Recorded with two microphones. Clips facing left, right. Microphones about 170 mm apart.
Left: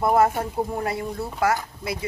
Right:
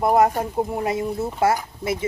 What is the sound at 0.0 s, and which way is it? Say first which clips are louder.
Speech: right 2 dB; 15° right (ahead or behind).